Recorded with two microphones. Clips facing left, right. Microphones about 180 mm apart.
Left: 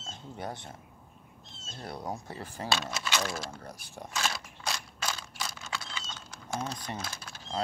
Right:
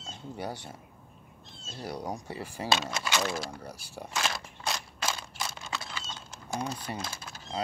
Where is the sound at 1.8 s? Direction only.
10° right (ahead or behind).